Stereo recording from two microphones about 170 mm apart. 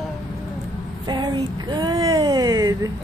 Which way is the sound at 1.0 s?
25° right (ahead or behind).